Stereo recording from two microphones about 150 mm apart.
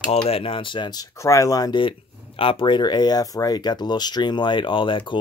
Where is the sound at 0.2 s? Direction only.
35° left (ahead or behind).